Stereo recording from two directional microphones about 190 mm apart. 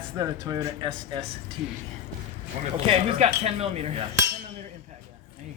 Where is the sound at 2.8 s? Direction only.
30° right (ahead or behind).